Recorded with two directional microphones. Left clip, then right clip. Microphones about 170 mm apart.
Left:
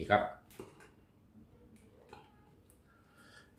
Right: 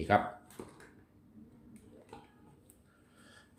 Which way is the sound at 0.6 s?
5° right (ahead or behind).